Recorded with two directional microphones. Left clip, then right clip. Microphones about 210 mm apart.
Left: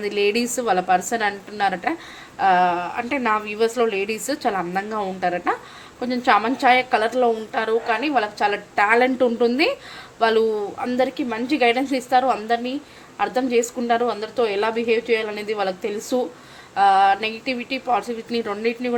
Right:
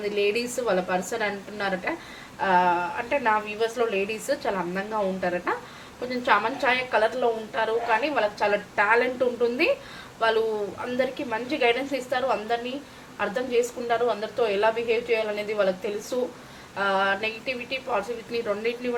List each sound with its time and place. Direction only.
0.0 s a woman's voice: 50° left (ahead or behind)